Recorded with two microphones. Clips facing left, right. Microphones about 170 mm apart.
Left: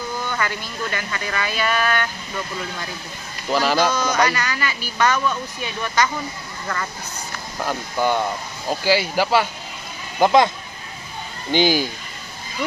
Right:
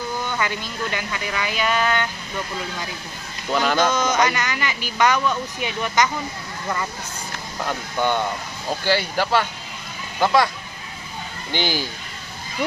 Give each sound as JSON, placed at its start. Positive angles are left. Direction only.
{"t": 0.4, "sound": "speech", "side_deg": -20}
{"t": 3.5, "sound": "speech", "side_deg": 5}
{"t": 3.9, "sound": "speech", "side_deg": -20}
{"t": 7.6, "sound": "speech", "side_deg": 5}
{"t": 10.2, "sound": "speech", "side_deg": 20}
{"t": 11.5, "sound": "speech", "side_deg": 15}